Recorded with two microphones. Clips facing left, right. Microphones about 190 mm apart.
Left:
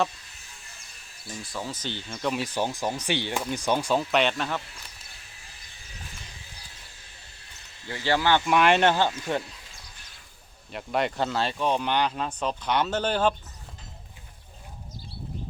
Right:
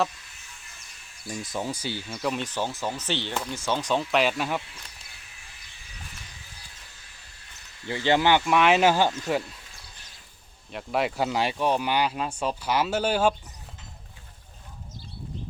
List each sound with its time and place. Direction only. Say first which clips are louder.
1.3 s speech: right 4 dB; 20° right (ahead or behind)
2.4 s speech: left 2 dB; 10° left (ahead or behind); by 4.6 s 10° right (ahead or behind)
7.9 s speech: right 2 dB; 20° right (ahead or behind)
8.4 s speech: left 2 dB; centre (ahead or behind)
10.7 s speech: even; centre (ahead or behind)